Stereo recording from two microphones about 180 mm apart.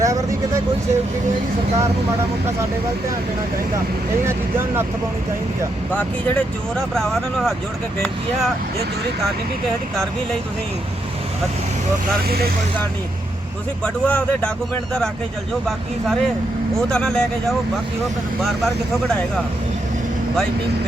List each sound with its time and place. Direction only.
0.0 s speech: 15° right (ahead or behind)
4.3 s speech: 15° right (ahead or behind)
5.9 s speech: 10° left (ahead or behind)
13.8 s speech: 5° left (ahead or behind)
16.7 s speech: 5° left (ahead or behind)